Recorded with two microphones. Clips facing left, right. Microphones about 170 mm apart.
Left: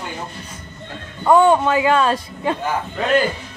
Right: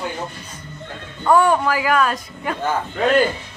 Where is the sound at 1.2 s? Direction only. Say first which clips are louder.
Left 2 dB; 20° left (ahead or behind).